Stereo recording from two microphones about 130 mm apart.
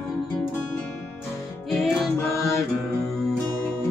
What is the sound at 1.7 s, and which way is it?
Music, centre (ahead or behind).